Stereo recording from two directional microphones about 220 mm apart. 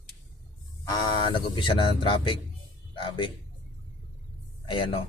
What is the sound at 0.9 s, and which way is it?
Speech, 20° left (ahead or behind).